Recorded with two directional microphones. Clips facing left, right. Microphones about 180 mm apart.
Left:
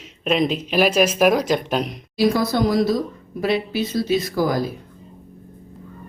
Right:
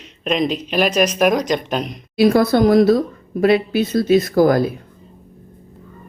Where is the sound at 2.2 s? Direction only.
55° right (ahead or behind).